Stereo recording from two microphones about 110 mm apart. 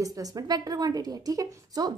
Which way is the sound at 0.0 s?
35° right (ahead or behind).